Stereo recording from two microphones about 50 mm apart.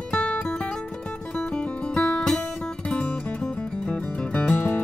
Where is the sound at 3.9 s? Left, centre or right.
Left.